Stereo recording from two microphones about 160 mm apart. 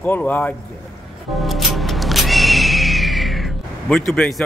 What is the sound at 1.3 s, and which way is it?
Music, centre (ahead or behind).